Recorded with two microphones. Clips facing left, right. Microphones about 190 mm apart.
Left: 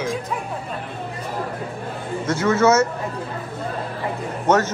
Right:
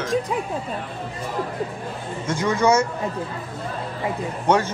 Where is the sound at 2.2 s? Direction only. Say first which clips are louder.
Left 3 dB; 15° right (ahead or behind).